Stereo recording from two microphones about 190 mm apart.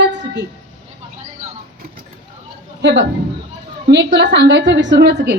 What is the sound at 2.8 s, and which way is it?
A woman's voice, 65° right (ahead or behind).